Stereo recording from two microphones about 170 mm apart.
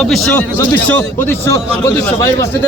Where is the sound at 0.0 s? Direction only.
Centre (ahead or behind).